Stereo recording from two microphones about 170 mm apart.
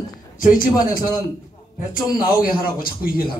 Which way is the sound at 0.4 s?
55° left (ahead or behind).